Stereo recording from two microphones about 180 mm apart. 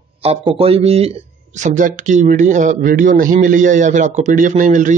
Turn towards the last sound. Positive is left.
turn(degrees=-45)  # may be behind; listen again after turning